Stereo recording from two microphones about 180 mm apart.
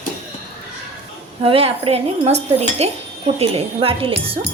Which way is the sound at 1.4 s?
30° right (ahead or behind).